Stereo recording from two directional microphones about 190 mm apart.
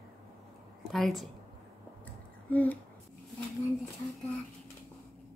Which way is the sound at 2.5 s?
10° left (ahead or behind).